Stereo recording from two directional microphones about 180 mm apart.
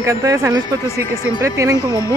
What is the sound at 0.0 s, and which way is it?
Speech, 15° right (ahead or behind).